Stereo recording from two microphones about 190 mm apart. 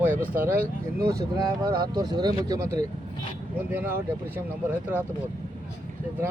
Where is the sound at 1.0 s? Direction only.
55° right (ahead or behind).